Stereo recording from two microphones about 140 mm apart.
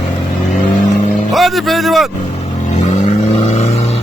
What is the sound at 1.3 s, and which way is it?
Speech, centre (ahead or behind).